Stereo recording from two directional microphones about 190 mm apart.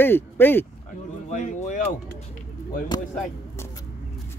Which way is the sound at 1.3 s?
40° left (ahead or behind).